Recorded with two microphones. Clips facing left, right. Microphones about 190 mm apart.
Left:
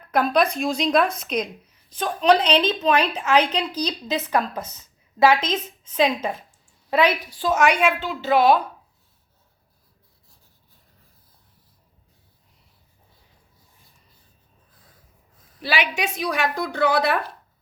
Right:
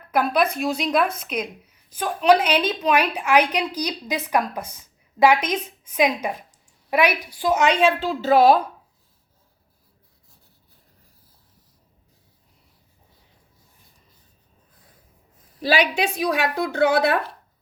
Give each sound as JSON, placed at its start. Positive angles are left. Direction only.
{"t": 0.1, "sound": "a woman's voice", "side_deg": -10}
{"t": 15.6, "sound": "a woman's voice", "side_deg": -35}